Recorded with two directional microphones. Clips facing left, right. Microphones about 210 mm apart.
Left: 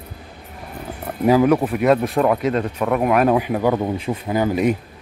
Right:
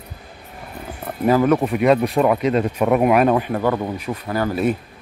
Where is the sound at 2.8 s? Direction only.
15° right (ahead or behind).